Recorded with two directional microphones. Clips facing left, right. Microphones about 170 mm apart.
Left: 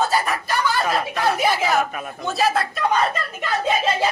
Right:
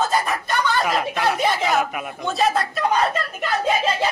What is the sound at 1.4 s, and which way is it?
Speech, 5° left (ahead or behind).